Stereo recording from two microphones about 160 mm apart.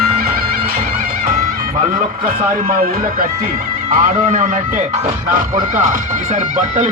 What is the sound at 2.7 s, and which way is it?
Speech, 60° right (ahead or behind).